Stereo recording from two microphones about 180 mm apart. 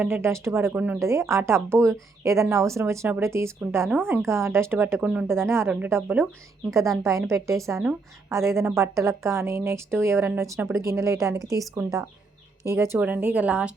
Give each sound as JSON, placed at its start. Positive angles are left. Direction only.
{"t": 0.0, "sound": "a woman's voice", "side_deg": -15}